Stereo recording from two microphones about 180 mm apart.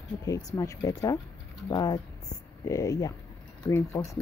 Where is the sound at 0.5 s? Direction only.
20° left (ahead or behind).